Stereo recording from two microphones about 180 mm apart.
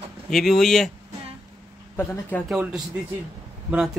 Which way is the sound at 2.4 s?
5° right (ahead or behind).